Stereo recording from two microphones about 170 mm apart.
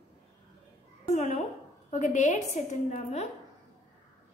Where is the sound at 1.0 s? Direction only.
45° left (ahead or behind).